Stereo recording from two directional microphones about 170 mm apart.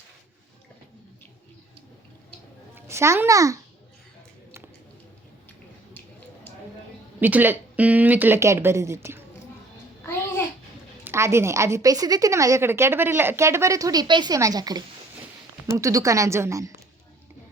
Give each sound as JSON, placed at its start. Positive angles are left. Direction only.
{"t": 2.7, "sound": "a child's voice", "side_deg": -15}
{"t": 7.2, "sound": "a woman's voice", "side_deg": -10}
{"t": 10.0, "sound": "babbling", "side_deg": 15}
{"t": 11.0, "sound": "a woman's voice", "side_deg": -15}